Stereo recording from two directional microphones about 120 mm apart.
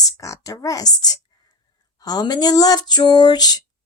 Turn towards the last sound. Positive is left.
turn(degrees=35)  # may be behind; listen again after turning